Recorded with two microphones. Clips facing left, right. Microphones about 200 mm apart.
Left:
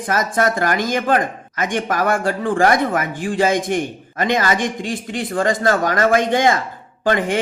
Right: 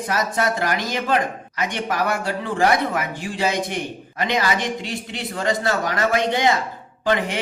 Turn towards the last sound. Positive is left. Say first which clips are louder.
# left 3 dB
turn(degrees=50)  # may be behind; listen again after turning